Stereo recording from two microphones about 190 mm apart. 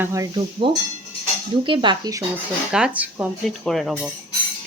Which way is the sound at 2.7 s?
5° right (ahead or behind).